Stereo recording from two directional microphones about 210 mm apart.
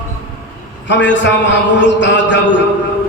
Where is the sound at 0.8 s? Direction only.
60° left (ahead or behind).